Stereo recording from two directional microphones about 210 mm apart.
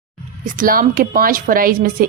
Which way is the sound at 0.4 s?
40° right (ahead or behind).